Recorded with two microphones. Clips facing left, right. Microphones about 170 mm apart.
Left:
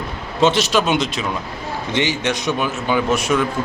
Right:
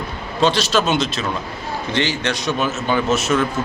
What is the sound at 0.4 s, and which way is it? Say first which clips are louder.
A man's voice: left 1 dB; 20° left (ahead or behind).